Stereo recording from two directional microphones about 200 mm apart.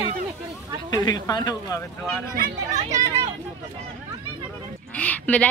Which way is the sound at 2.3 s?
45° right (ahead or behind).